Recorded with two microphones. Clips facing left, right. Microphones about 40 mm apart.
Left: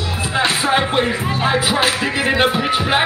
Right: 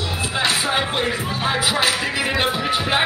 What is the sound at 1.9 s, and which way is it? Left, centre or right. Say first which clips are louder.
Music: left 3 dB; centre.